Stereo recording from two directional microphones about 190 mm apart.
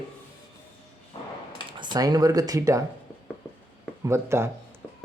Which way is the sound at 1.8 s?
20° right (ahead or behind).